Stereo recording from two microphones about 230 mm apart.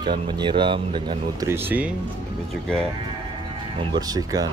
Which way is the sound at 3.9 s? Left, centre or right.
Centre.